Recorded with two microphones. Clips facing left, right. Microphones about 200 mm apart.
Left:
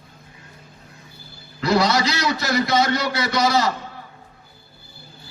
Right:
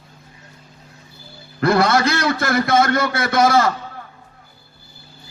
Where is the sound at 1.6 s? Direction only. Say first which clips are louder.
Right 3 dB; 55° right (ahead or behind).